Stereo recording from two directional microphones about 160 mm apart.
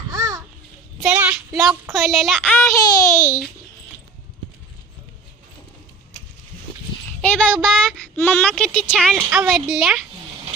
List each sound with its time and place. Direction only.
0.1 s children playing: 20° right (ahead or behind)
1.1 s child singing: 5° right (ahead or behind)
2.6 s a sound: 15° left (ahead or behind)
7.2 s speech: 5° left (ahead or behind)
9.1 s a woman's voice: 10° right (ahead or behind)